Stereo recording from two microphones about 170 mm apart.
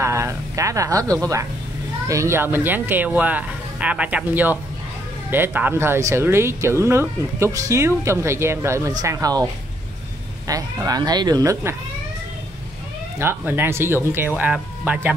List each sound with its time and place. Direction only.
0.0 s a sound: 15° right (ahead or behind)
2.0 s speech: 15° right (ahead or behind)
13.2 s speech: 15° right (ahead or behind)